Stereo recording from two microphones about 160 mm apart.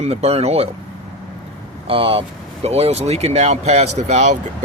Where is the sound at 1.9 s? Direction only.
35° right (ahead or behind).